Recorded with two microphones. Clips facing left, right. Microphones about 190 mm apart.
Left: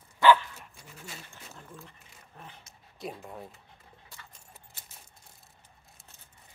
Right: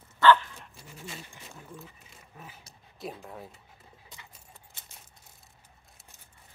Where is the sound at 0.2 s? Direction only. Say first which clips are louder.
Even; 10° left (ahead or behind).